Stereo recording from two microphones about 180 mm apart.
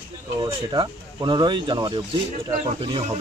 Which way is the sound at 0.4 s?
25° right (ahead or behind).